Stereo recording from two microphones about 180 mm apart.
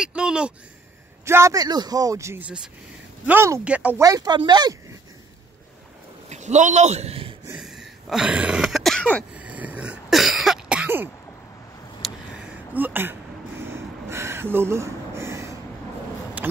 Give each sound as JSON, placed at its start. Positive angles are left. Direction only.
{"t": 0.0, "sound": "a sound", "side_deg": -5}
{"t": 1.2, "sound": "speech", "side_deg": -15}
{"t": 4.0, "sound": "speech", "side_deg": -20}
{"t": 6.2, "sound": "a man's voice", "side_deg": -40}
{"t": 7.5, "sound": "throat clearing", "side_deg": 0}
{"t": 9.3, "sound": "cough", "side_deg": -10}
{"t": 12.0, "sound": "a sound", "side_deg": -5}